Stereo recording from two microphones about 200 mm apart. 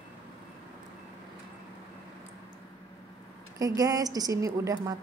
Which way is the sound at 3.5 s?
15° right (ahead or behind).